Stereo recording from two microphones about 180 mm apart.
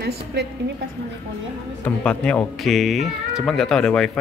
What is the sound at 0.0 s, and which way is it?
Speech, 65° right (ahead or behind).